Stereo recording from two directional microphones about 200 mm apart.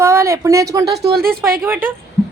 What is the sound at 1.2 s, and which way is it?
Speech, 50° right (ahead or behind).